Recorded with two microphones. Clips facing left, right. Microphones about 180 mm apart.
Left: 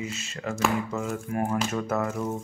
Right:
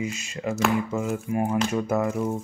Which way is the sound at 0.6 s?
5° right (ahead or behind).